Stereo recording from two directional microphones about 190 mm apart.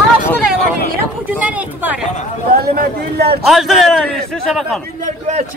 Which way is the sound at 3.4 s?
Centre (ahead or behind).